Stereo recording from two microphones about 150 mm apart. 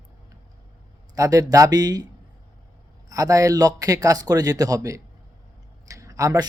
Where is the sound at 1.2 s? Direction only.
20° right (ahead or behind).